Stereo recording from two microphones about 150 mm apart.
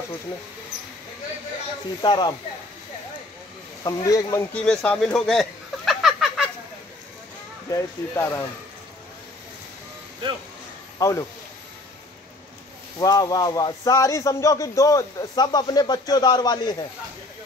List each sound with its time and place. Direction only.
2.0 s speech: 30° left (ahead or behind)
3.8 s speech: 20° left (ahead or behind)
4.6 s a sound: 5° left (ahead or behind)
7.7 s speech: 20° left (ahead or behind)
11.0 s speech: 20° left (ahead or behind)
13.0 s speech: 25° left (ahead or behind)